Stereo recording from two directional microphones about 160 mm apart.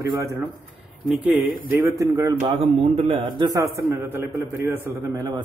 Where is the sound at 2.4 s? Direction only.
35° right (ahead or behind).